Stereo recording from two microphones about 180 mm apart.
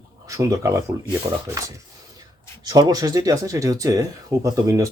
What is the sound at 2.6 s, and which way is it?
Speech, 20° right (ahead or behind).